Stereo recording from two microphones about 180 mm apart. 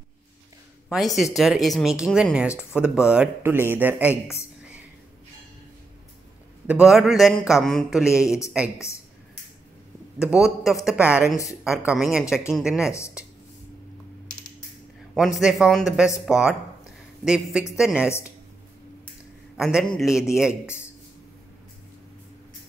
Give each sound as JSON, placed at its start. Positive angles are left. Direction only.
{"t": 0.8, "sound": "a man's voice", "side_deg": 0}
{"t": 6.7, "sound": "a man's voice", "side_deg": -5}
{"t": 10.2, "sound": "a man's voice", "side_deg": -5}
{"t": 12.9, "sound": "speech", "side_deg": 15}
{"t": 15.1, "sound": "a man's voice", "side_deg": 0}
{"t": 19.5, "sound": "a man's voice", "side_deg": 0}